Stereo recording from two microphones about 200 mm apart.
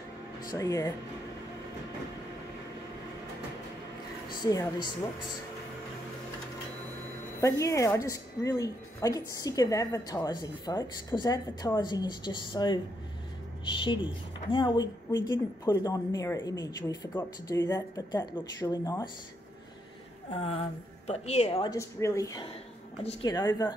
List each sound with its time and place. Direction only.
0.5 s a woman's voice: 15° left (ahead or behind)
4.3 s a woman's voice: 20° left (ahead or behind)
7.3 s a woman's voice: 15° left (ahead or behind)
20.3 s a woman's voice: 30° left (ahead or behind)
21.6 s a woman's voice: 15° left (ahead or behind)